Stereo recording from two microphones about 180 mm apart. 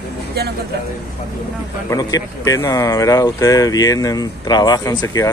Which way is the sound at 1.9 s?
20° left (ahead or behind).